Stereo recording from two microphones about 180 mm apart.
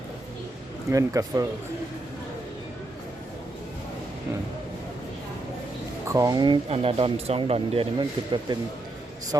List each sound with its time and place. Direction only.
0.9 s speech: 20° right (ahead or behind)
6.1 s a man's voice: 20° right (ahead or behind)